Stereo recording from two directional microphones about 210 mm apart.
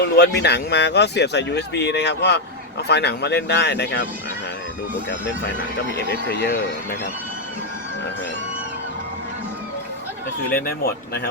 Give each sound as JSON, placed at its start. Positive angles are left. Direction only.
{"t": 0.0, "sound": "speech", "side_deg": 50}
{"t": 6.2, "sound": "speech", "side_deg": 50}
{"t": 10.5, "sound": "speech", "side_deg": 45}